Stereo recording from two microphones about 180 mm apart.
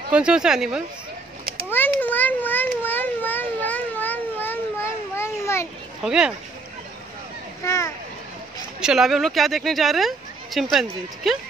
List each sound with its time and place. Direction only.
0.1 s speech: 5° right (ahead or behind)
1.7 s a sound: 10° left (ahead or behind)
6.0 s speech: 5° right (ahead or behind)
7.6 s speech: 15° left (ahead or behind)
8.8 s speech: centre (ahead or behind)